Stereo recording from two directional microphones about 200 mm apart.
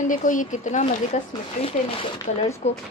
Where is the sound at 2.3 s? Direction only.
35° left (ahead or behind).